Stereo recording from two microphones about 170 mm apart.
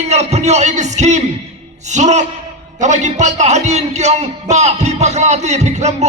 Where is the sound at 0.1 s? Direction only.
40° right (ahead or behind).